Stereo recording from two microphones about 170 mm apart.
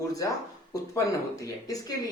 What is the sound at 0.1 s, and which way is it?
Speech, 20° left (ahead or behind).